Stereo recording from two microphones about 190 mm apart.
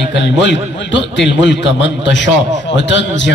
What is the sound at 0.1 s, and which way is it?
A man's voice, 65° left (ahead or behind).